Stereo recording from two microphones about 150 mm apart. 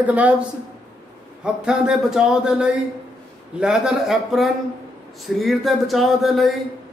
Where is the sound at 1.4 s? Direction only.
5° right (ahead or behind).